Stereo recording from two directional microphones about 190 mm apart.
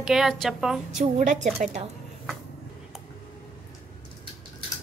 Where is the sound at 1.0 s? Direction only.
40° right (ahead or behind).